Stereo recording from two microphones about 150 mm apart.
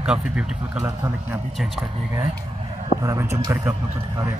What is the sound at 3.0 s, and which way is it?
Speech, 20° right (ahead or behind).